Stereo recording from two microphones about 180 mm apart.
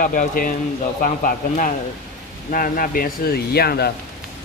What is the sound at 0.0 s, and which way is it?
A man's voice, 50° left (ahead or behind).